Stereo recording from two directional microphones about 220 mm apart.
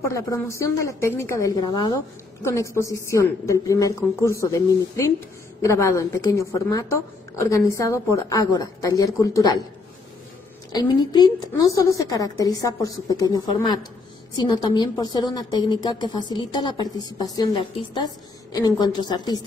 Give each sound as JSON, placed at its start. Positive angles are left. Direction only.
{"t": 0.1, "sound": "a woman's voice", "side_deg": 15}
{"t": 10.7, "sound": "a woman's voice", "side_deg": 20}